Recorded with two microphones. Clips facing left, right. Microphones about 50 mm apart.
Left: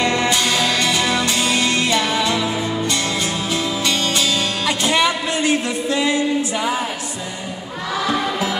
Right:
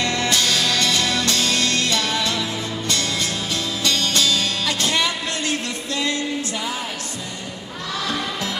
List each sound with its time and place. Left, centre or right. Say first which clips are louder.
0.0 s music: left 3 dB; centre
8.0 s music: left 6 dB; centre